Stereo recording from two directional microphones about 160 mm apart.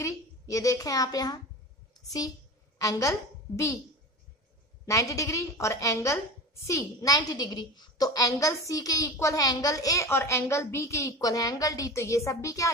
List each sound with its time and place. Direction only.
0.0 s a woman's voice: 20° left (ahead or behind)
2.8 s a woman's voice: 20° left (ahead or behind)
4.8 s a woman's voice: 20° left (ahead or behind)